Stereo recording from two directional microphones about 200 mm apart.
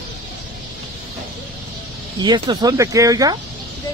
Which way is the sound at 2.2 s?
20° right (ahead or behind).